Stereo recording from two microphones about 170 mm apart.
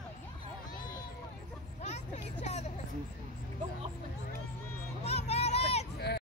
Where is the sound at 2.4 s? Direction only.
40° left (ahead or behind).